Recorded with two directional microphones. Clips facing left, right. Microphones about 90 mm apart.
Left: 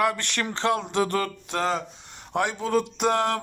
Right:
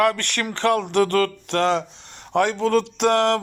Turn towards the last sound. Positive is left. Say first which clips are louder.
# right 5 dB
turn(degrees=-70)  # may be behind; listen again after turning